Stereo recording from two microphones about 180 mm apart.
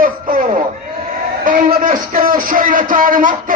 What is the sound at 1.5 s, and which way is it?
A man's voice, 50° right (ahead or behind).